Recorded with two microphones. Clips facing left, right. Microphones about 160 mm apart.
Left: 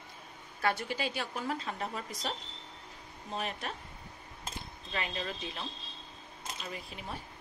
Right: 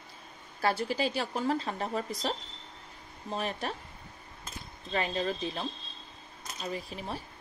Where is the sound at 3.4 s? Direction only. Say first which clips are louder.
Right 4 dB; 35° right (ahead or behind).